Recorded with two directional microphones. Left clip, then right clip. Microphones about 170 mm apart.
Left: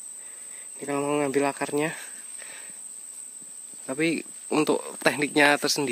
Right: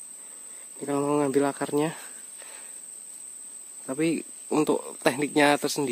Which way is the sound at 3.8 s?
20° right (ahead or behind).